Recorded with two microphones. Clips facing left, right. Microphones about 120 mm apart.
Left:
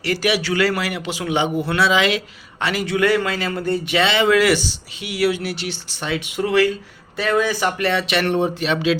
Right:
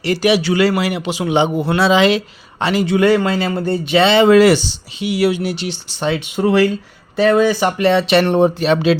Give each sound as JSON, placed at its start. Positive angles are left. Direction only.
{"t": 0.0, "sound": "a man's voice", "side_deg": -20}